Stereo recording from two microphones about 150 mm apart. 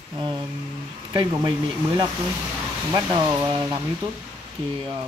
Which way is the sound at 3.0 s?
20° right (ahead or behind).